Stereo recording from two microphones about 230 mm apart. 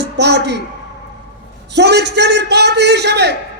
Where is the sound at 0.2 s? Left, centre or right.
Right.